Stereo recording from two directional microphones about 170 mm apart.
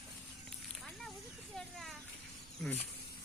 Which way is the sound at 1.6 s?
5° left (ahead or behind).